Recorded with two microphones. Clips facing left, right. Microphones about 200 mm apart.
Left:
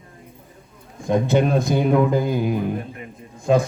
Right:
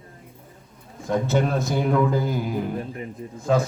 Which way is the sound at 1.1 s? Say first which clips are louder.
Left 4 dB; 15° left (ahead or behind).